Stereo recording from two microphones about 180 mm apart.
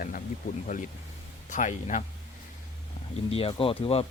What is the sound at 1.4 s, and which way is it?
Speech, 45° left (ahead or behind).